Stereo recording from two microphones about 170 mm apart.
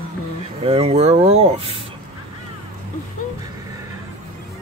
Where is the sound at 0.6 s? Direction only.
35° right (ahead or behind).